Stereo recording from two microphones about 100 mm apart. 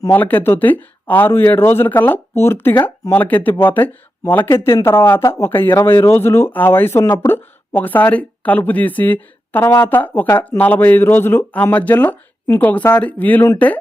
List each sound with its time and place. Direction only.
0.1 s speech: 20° left (ahead or behind)